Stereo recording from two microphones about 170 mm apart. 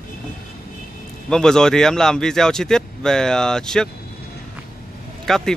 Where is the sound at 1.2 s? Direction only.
5° left (ahead or behind).